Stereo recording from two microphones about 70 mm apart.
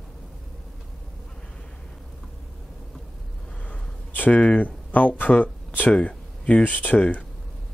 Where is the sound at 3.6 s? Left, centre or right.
Left.